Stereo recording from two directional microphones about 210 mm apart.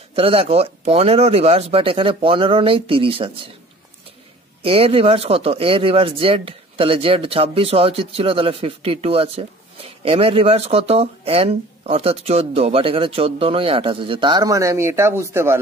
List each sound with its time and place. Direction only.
0.1 s speech: 25° right (ahead or behind)
4.6 s speech: 25° right (ahead or behind)